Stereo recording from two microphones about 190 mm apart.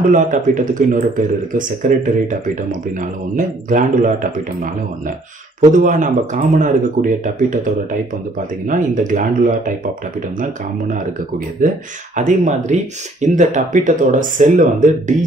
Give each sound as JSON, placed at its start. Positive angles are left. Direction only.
{"t": 0.1, "sound": "speech", "side_deg": -40}
{"t": 5.6, "sound": "speech", "side_deg": -45}